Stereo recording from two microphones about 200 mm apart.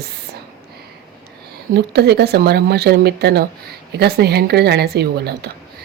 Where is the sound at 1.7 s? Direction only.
55° right (ahead or behind).